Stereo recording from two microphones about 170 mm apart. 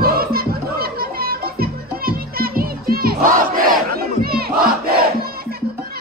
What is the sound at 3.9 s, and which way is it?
Crowd, 65° right (ahead or behind).